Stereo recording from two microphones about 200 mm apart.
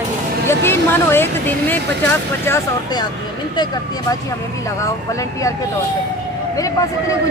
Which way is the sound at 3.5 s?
20° left (ahead or behind).